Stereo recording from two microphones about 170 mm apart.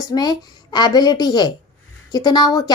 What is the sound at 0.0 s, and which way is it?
Speech, 25° left (ahead or behind).